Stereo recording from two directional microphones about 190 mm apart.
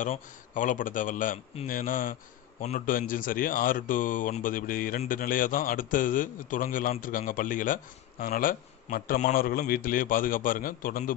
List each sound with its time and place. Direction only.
0.0 s speech: 40° left (ahead or behind)